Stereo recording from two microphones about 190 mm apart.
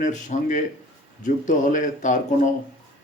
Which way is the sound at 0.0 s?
40° left (ahead or behind).